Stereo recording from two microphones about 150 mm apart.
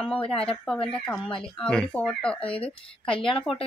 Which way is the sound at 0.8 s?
5° left (ahead or behind).